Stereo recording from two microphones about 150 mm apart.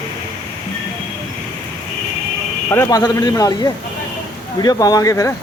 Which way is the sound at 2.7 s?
20° left (ahead or behind).